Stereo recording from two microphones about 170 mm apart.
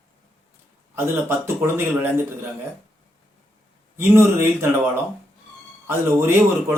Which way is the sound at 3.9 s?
15° right (ahead or behind).